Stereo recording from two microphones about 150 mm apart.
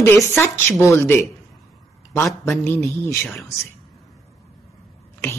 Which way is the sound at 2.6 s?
15° left (ahead or behind).